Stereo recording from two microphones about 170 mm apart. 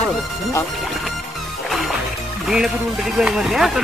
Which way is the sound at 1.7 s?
Centre (ahead or behind).